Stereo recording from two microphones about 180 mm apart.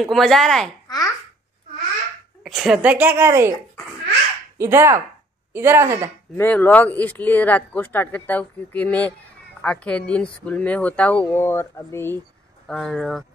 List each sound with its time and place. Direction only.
0.0 s speech: centre (ahead or behind)
0.8 s babbling: 20° left (ahead or behind)
2.4 s a woman's voice: 5° right (ahead or behind)
4.6 s a woman's voice: 15° right (ahead or behind)
6.3 s speech: 10° left (ahead or behind)
12.6 s speech: centre (ahead or behind)